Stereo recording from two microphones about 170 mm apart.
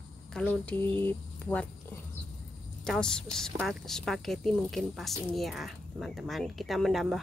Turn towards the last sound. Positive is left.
turn(degrees=0)  # may be behind; listen again after turning